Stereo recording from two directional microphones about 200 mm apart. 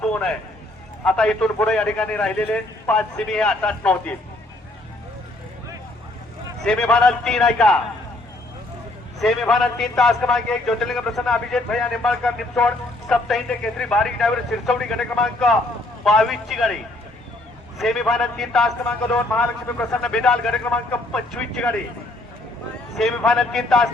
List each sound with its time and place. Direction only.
0.0 s a man's voice: 5° left (ahead or behind)
6.6 s a man's voice: 5° left (ahead or behind)
9.2 s a man's voice: centre (ahead or behind)
17.7 s a man's voice: centre (ahead or behind)
23.0 s a man's voice: centre (ahead or behind)